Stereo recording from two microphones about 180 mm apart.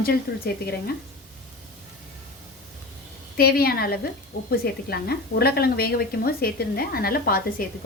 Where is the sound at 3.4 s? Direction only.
60° left (ahead or behind).